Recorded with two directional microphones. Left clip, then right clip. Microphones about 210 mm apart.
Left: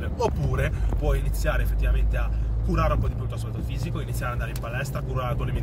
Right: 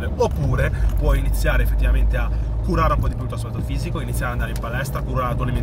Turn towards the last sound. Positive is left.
turn(degrees=-15)  # may be behind; listen again after turning